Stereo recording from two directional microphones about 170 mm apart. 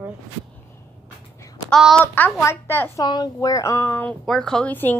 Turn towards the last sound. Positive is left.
turn(degrees=10)  # may be behind; listen again after turning